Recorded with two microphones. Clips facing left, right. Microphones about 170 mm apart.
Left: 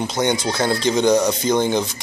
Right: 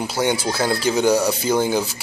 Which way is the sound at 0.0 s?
5° right (ahead or behind).